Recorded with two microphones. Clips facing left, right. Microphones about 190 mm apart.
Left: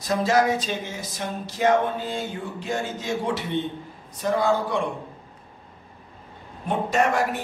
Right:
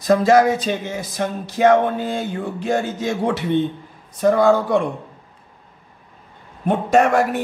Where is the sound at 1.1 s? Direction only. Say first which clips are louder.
Right 9 dB; 65° right (ahead or behind).